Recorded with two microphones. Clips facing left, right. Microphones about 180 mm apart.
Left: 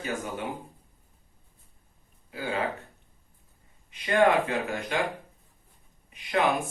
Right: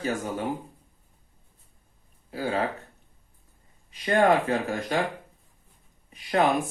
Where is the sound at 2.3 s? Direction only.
40° right (ahead or behind).